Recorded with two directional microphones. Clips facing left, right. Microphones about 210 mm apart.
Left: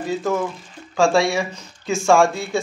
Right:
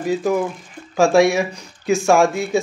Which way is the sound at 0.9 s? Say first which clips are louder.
Right 4 dB; 20° right (ahead or behind).